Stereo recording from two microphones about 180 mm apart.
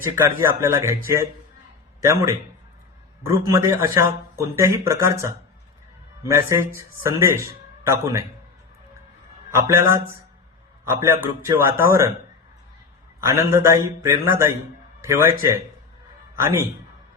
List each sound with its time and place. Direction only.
0.2 s a man's voice: 15° right (ahead or behind)
6.2 s a man's voice: 15° right (ahead or behind)
9.5 s a man's voice: 15° right (ahead or behind)
13.2 s a man's voice: 15° right (ahead or behind)